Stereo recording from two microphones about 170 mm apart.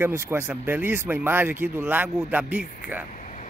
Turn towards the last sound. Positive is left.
turn(degrees=45)  # may be behind; listen again after turning